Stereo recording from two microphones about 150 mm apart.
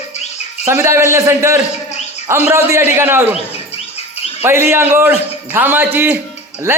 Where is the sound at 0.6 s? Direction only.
15° right (ahead or behind).